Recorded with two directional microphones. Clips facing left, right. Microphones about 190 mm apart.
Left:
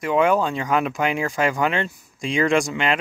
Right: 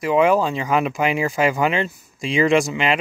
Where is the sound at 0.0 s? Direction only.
Centre (ahead or behind).